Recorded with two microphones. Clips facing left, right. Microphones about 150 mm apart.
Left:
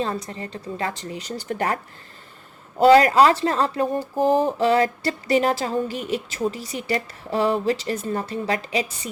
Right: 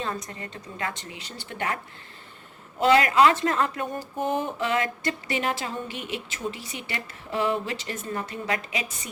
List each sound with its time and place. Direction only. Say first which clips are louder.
0.0 s speech: left 5 dB; 30° left (ahead or behind)